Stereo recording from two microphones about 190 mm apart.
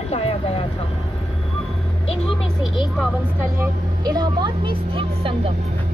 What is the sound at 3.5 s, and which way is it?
Speech, 20° right (ahead or behind).